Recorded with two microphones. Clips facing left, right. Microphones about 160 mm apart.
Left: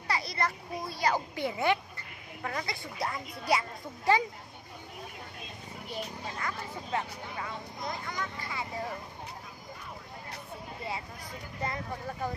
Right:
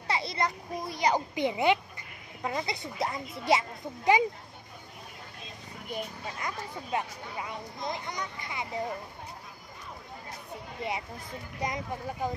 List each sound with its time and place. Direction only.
0.1 s a child's voice: 25° right (ahead or behind)
6.4 s a child's voice: 15° right (ahead or behind)
10.8 s a child's voice: 20° right (ahead or behind)